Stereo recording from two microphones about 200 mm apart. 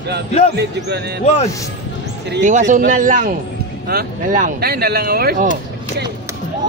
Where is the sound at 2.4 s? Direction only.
40° right (ahead or behind).